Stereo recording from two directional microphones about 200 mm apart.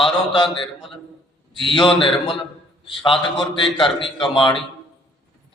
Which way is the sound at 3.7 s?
25° left (ahead or behind).